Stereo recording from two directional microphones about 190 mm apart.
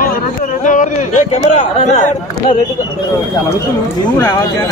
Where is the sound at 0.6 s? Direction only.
40° left (ahead or behind).